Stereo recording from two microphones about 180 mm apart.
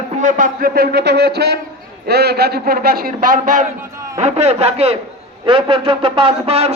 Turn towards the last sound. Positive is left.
turn(degrees=-35)  # may be behind; listen again after turning